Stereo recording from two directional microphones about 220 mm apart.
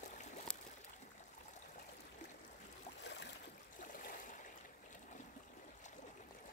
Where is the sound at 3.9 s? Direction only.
40° left (ahead or behind).